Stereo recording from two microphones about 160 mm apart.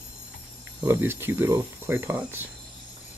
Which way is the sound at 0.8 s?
15° right (ahead or behind).